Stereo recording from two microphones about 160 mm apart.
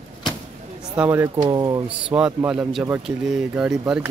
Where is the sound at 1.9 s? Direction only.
5° right (ahead or behind).